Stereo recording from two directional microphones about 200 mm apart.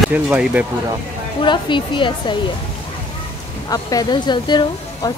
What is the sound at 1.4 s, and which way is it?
Speech, 25° left (ahead or behind).